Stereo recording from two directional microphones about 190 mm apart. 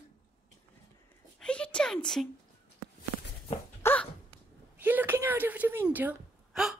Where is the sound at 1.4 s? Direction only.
5° left (ahead or behind).